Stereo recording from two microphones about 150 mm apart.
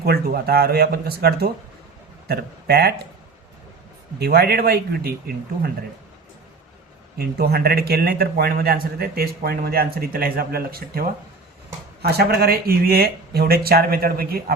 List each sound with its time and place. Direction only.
0.0 s a man's voice: 90° right
4.2 s a man's voice: 90° right
7.2 s a man's voice: 90° right